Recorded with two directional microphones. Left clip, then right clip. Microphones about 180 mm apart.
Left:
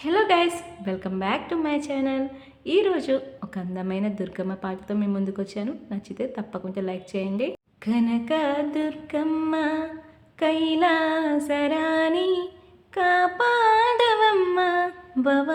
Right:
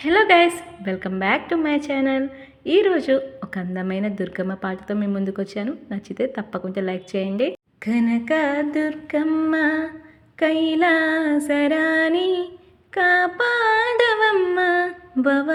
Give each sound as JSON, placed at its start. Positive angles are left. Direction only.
{"t": 0.0, "sound": "a woman's voice", "side_deg": -15}